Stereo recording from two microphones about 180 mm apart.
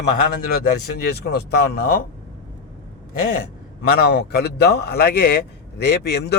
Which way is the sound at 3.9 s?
60° left (ahead or behind).